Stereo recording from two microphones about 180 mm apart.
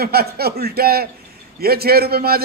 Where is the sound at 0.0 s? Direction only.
60° right (ahead or behind).